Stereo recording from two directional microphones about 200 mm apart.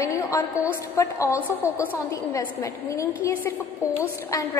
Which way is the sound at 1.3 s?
10° right (ahead or behind).